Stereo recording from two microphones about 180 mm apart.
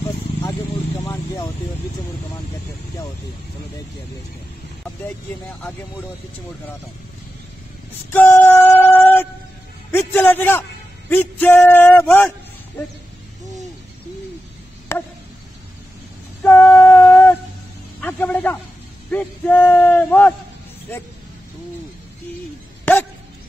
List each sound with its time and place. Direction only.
1.0 s speech: 20° left (ahead or behind)
8.1 s female singing: 10° left (ahead or behind)
9.8 s a man's voice: 10° left (ahead or behind)
12.1 s a sound: 10° left (ahead or behind)
14.9 s chop: 15° left (ahead or behind)
16.4 s female singing: 10° left (ahead or behind)
18.0 s a man's voice: 10° left (ahead or behind)